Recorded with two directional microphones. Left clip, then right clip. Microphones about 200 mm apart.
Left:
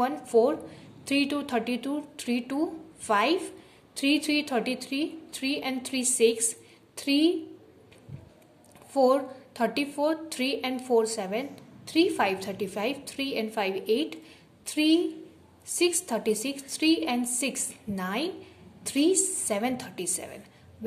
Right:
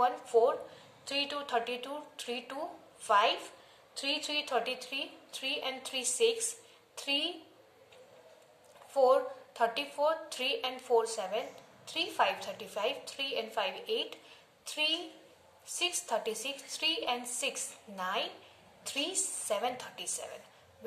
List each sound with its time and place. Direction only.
0.0 s a woman's voice: 35° left (ahead or behind)
6.4 s a sound: 35° left (ahead or behind)
8.9 s a woman's voice: 35° left (ahead or behind)